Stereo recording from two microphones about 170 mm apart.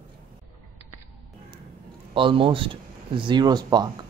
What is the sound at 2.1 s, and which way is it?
Speech, 30° right (ahead or behind).